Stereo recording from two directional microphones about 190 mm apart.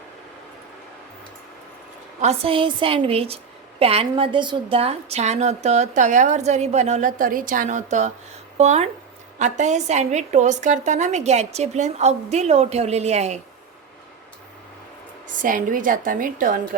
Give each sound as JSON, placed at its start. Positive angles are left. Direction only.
{"t": 2.2, "sound": "a woman's voice", "side_deg": -30}
{"t": 15.4, "sound": "a woman's voice", "side_deg": -45}